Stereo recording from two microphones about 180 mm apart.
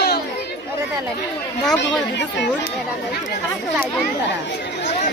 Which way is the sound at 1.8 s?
70° left (ahead or behind).